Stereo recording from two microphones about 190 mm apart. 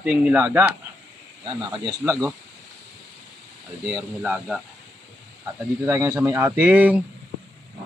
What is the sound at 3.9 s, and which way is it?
Speech, 5° right (ahead or behind).